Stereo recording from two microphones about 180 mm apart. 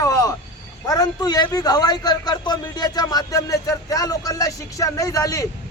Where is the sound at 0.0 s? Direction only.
20° left (ahead or behind).